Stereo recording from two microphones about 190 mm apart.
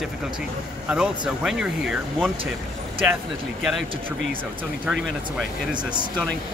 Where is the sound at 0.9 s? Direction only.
5° right (ahead or behind).